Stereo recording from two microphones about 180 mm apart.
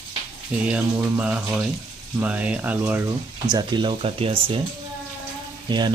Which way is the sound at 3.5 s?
25° right (ahead or behind).